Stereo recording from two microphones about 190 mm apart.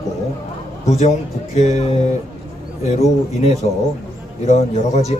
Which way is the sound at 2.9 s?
35° left (ahead or behind).